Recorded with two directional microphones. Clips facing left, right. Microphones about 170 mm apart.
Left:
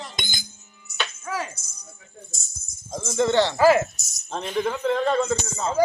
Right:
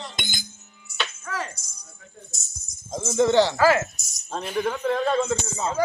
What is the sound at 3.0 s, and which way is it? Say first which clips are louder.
A man's voice: right 2 dB; 5° right (ahead or behind).